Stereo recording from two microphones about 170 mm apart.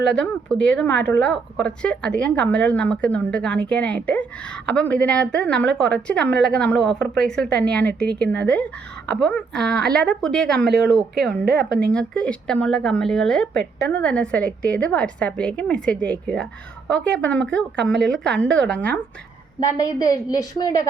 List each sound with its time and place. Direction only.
0.0 s a woman's voice: 5° left (ahead or behind)
19.5 s a woman's voice: 20° left (ahead or behind)